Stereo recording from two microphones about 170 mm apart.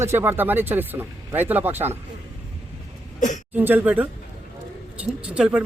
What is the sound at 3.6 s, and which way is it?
Speech, 10° right (ahead or behind).